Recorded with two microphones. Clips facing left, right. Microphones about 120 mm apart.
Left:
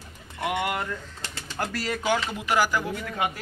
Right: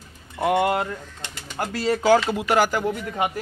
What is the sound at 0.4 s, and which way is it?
Speech, 35° right (ahead or behind).